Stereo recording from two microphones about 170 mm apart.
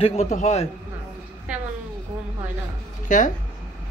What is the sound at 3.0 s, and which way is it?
Speech, 50° left (ahead or behind).